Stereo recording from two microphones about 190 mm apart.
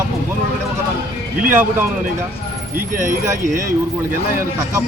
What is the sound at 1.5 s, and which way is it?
Speech, 10° right (ahead or behind).